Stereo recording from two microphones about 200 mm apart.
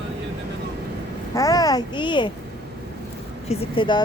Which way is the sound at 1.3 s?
15° left (ahead or behind).